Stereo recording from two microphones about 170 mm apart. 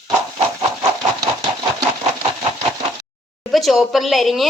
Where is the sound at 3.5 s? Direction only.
Centre (ahead or behind).